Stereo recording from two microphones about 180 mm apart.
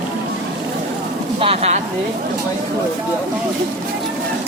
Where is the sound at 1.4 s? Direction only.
30° right (ahead or behind).